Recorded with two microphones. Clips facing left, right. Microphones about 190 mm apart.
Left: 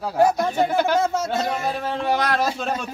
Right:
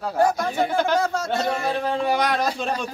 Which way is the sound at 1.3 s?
Centre (ahead or behind).